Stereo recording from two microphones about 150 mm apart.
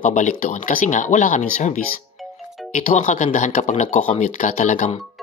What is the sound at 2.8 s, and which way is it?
Speech, 55° left (ahead or behind).